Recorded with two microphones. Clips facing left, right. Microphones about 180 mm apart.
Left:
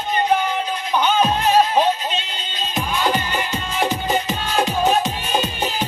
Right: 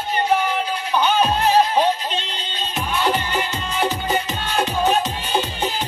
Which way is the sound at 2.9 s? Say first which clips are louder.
Right 1 dB; 10° left (ahead or behind).